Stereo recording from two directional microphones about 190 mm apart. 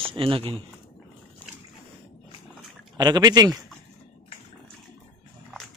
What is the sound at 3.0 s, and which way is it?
Speech, 20° right (ahead or behind).